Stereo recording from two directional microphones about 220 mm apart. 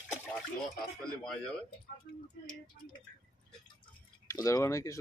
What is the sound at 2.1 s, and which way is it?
Speech, 55° left (ahead or behind).